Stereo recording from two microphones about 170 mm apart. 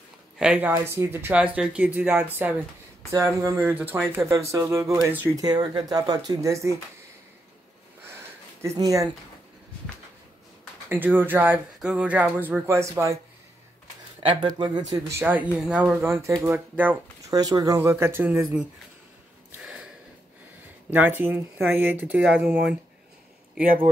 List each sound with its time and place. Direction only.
0.4 s speech: 10° right (ahead or behind)
8.6 s speech: 20° right (ahead or behind)
10.9 s speech: 10° right (ahead or behind)
14.9 s speech: 15° right (ahead or behind)
17.3 s speech: 20° right (ahead or behind)
19.5 s gasp: 5° right (ahead or behind)
20.9 s speech: 10° right (ahead or behind)